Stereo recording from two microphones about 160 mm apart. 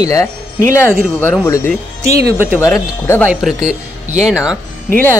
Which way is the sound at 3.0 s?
15° left (ahead or behind).